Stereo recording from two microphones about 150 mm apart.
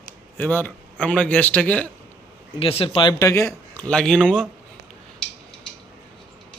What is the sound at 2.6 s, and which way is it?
Speech, 40° left (ahead or behind).